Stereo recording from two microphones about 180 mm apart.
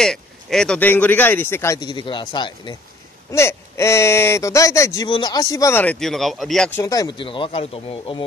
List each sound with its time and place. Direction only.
0.0 s speech: 5° left (ahead or behind); by 2.7 s 25° left (ahead or behind)
3.3 s speech: 15° left (ahead or behind)
6.8 s speech: 20° left (ahead or behind)